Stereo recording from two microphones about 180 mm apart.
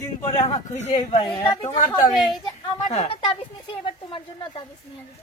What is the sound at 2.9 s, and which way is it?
Speech, 40° left (ahead or behind).